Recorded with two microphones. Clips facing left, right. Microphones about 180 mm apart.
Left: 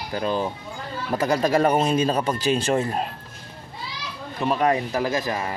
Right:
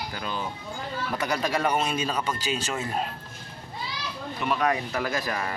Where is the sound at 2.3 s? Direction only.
55° left (ahead or behind).